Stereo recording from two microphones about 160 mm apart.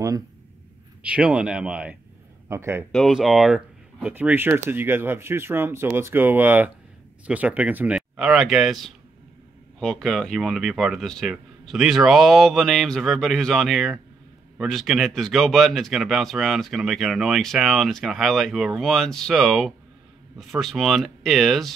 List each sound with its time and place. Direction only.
1.0 s speech: 5° right (ahead or behind)
2.4 s a man's voice: 15° right (ahead or behind)
2.9 s speech: centre (ahead or behind)